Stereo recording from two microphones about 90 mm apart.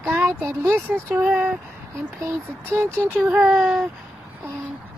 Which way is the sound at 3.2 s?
10° right (ahead or behind).